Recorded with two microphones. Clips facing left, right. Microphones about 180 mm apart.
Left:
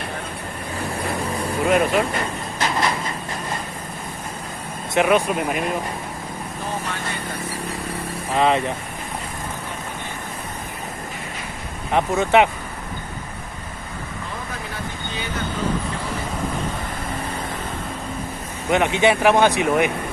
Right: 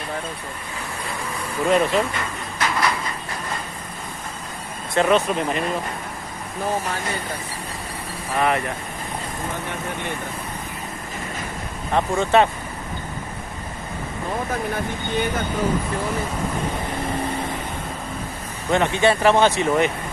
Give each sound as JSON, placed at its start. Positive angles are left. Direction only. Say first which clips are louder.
{"t": 1.7, "sound": "speech", "louder": "even", "side_deg": 10}
{"t": 2.1, "sound": "vehicle", "louder": "left 3 dB", "side_deg": 25}
{"t": 5.0, "sound": "speech", "louder": "even", "side_deg": 10}
{"t": 8.4, "sound": "speech", "louder": "left 3 dB", "side_deg": 20}
{"t": 11.9, "sound": "speech", "louder": "left 1 dB", "side_deg": 15}
{"t": 18.7, "sound": "speech", "louder": "left 1 dB", "side_deg": 15}